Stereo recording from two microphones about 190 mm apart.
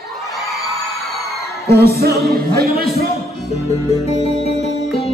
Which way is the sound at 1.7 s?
55° right (ahead or behind).